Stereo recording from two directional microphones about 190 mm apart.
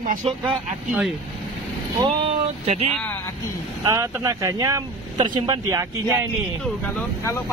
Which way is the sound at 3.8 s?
15° right (ahead or behind).